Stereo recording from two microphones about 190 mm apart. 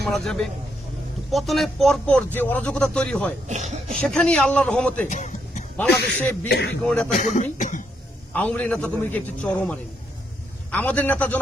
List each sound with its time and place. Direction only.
0.0 s speech: centre (ahead or behind)
3.5 s a sound: 35° right (ahead or behind)
4.0 s speech: 5° left (ahead or behind)
5.0 s a sound: 40° left (ahead or behind)
6.5 s a man's voice: 60° left (ahead or behind)
6.8 s speech: 5° left (ahead or behind)
7.1 s speech: 40° left (ahead or behind)
8.3 s a man's voice: 5° left (ahead or behind)